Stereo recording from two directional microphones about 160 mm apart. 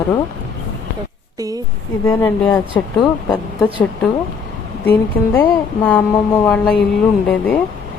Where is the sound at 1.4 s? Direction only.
20° right (ahead or behind).